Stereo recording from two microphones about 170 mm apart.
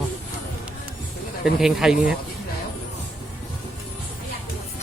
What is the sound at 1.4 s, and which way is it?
Speech, 5° right (ahead or behind).